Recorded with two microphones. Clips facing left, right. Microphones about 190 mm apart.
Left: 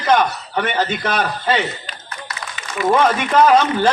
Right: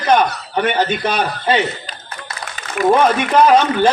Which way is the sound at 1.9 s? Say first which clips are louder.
Right 1 dB; 30° right (ahead or behind).